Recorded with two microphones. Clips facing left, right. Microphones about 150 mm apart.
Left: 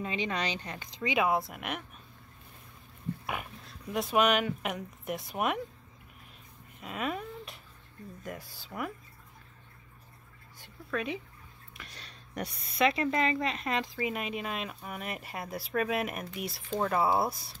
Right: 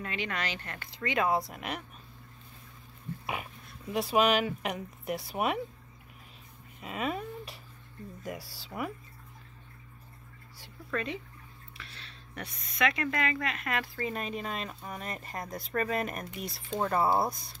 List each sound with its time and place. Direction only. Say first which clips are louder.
0.0 s speech: left 3 dB; 20° left (ahead or behind); by 1.9 s centre (ahead or behind)
3.3 s speech: even; centre (ahead or behind)
6.8 s a sound: right 1 dB; centre (ahead or behind)
8.4 s speech: right 2 dB; 90° right
8.6 s speech: right 1 dB; centre (ahead or behind)
10.9 s speech: left 1 dB; 10° left (ahead or behind)
11.7 s speech: left 1 dB; 40° left (ahead or behind); by 13.8 s 25° left (ahead or behind)
13.9 s speech: left 1 dB; 5° left (ahead or behind)